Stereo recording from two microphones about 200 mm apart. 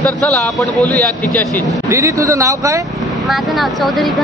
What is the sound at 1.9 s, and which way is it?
Speech, 15° right (ahead or behind).